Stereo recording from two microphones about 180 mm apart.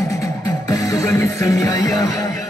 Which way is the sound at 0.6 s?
20° left (ahead or behind).